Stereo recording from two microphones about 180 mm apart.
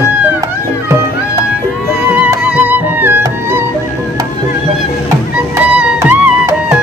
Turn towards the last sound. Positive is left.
turn(degrees=-10)  # may be behind; listen again after turning